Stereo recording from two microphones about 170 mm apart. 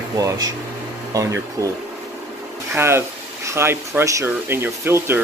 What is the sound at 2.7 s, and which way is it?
Speech, 15° right (ahead or behind).